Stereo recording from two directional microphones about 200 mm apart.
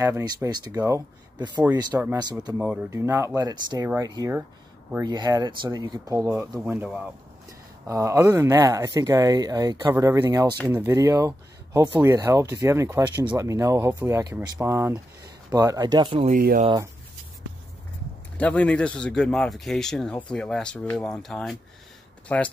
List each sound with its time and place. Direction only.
0.0 s speech: 15° right (ahead or behind)
16.3 s speech: 40° right (ahead or behind)
16.6 s speech: 20° right (ahead or behind)
18.4 s speech: 5° left (ahead or behind)